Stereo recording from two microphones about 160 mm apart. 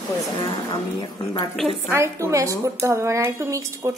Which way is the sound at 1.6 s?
Centre (ahead or behind).